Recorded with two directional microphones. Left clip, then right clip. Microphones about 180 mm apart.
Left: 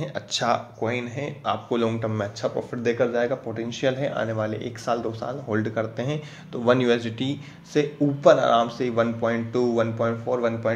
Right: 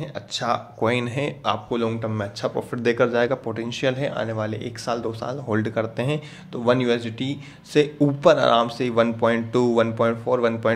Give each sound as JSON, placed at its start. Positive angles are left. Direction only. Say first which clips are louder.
{"t": 0.0, "sound": "speech", "louder": "left 2 dB", "side_deg": 0}
{"t": 0.7, "sound": "speech", "louder": "right 5 dB", "side_deg": -40}
{"t": 1.7, "sound": "speech", "louder": "even", "side_deg": -5}
{"t": 2.5, "sound": "speech", "louder": "right 2 dB", "side_deg": -25}
{"t": 8.0, "sound": "speech", "louder": "left 1 dB", "side_deg": -30}